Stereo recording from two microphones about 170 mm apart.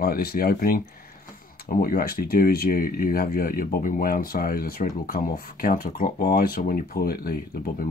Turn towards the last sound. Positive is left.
turn(degrees=60)  # may be behind; listen again after turning